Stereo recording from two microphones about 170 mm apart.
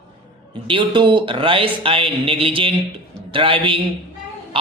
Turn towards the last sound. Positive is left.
turn(degrees=-30)  # may be behind; listen again after turning